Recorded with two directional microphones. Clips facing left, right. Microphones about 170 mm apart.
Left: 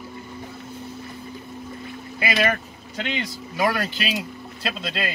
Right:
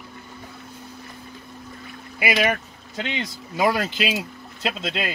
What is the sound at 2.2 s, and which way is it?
Speech, 15° right (ahead or behind).